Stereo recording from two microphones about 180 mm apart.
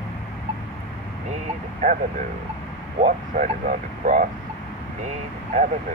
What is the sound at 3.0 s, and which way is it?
Speech, 45° right (ahead or behind).